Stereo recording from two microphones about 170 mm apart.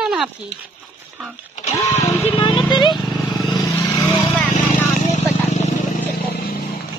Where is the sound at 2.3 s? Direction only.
30° left (ahead or behind).